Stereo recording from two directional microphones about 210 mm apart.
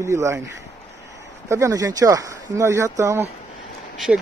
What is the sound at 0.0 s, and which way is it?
Speech, 15° right (ahead or behind).